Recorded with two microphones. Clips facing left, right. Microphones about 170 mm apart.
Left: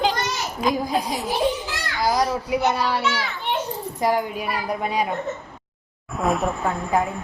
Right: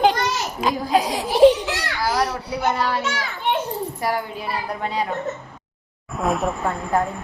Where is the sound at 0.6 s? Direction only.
90° right.